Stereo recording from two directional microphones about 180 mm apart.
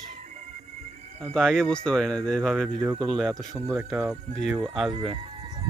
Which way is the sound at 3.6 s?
10° right (ahead or behind).